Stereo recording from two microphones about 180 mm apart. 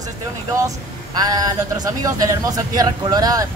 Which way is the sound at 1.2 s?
20° right (ahead or behind).